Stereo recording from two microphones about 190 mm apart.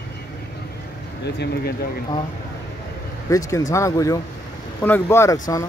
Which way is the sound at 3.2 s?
15° left (ahead or behind).